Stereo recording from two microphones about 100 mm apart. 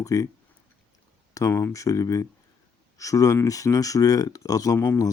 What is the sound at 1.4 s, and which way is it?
Speech, 25° left (ahead or behind).